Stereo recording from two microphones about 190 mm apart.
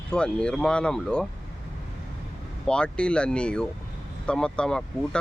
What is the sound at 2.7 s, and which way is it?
Speech, 5° left (ahead or behind).